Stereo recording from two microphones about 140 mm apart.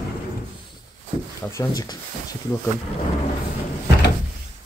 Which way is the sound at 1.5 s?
25° left (ahead or behind).